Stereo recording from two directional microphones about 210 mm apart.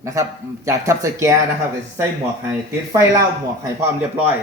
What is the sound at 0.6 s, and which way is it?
Speech, 15° right (ahead or behind).